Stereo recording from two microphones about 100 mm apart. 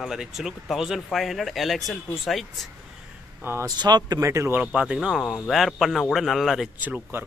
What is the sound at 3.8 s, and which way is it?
Speech, 45° right (ahead or behind).